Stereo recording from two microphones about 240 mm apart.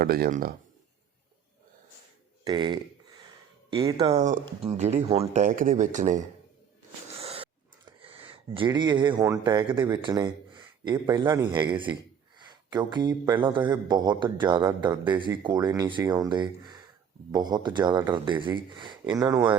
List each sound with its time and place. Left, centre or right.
0.0 s speech: right
2.4 s speech: centre
7.2 s dog: right
7.9 s speech: right